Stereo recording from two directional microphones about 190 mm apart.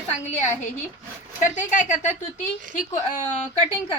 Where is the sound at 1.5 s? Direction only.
40° left (ahead or behind).